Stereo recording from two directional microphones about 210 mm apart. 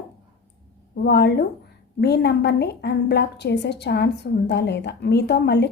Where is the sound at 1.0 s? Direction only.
50° left (ahead or behind).